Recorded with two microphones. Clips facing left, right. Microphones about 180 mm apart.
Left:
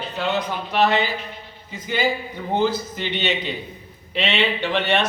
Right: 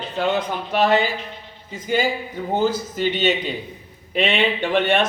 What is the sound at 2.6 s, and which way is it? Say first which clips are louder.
A man's voice: right 1 dB; 45° right (ahead or behind).